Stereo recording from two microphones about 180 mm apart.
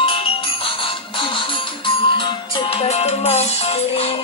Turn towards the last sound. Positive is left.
turn(degrees=35)  # may be behind; listen again after turning